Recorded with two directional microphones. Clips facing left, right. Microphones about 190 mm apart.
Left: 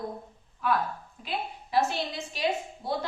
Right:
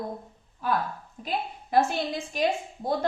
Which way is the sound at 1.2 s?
45° right (ahead or behind).